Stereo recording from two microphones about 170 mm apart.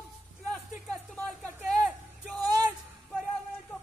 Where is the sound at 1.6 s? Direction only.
Centre (ahead or behind).